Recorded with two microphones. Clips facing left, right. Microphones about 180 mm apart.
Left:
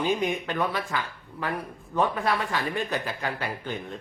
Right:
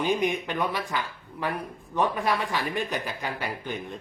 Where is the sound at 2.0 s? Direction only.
15° right (ahead or behind).